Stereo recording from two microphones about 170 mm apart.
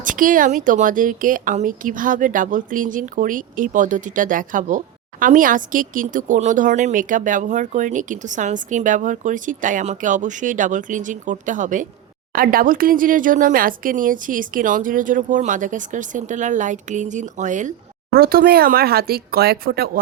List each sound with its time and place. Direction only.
0.0 s speech: 50° right (ahead or behind)